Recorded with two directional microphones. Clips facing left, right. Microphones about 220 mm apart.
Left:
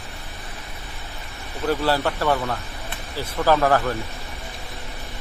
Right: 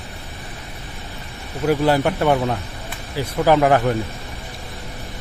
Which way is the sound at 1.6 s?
15° right (ahead or behind).